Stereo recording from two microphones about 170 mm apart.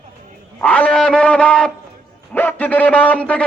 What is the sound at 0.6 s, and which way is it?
A man's voice, 5° left (ahead or behind).